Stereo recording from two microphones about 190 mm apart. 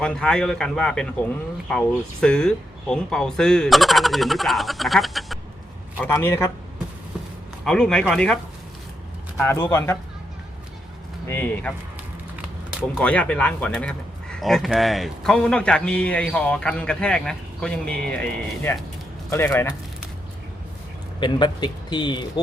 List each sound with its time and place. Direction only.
0.0 s speech: 5° left (ahead or behind)
2.2 s speech: 5° left (ahead or behind)
6.0 s speech: 10° left (ahead or behind)
7.6 s speech: 5° left (ahead or behind)
9.4 s speech: 10° left (ahead or behind)
11.3 s speech: 10° left (ahead or behind)
13.0 s speech: 5° left (ahead or behind)
21.2 s speech: 25° left (ahead or behind)